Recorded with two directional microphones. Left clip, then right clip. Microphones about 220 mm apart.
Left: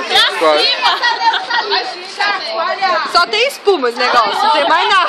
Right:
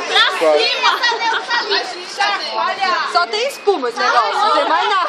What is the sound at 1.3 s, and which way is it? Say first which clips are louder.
Chatter: left 5 dB; centre (ahead or behind).